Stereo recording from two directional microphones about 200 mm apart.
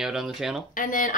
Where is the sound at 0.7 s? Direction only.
40° left (ahead or behind).